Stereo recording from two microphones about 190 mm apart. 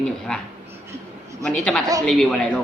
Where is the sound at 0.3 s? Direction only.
5° left (ahead or behind).